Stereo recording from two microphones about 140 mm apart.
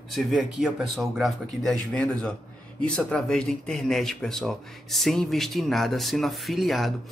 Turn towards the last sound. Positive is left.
turn(degrees=0)  # may be behind; listen again after turning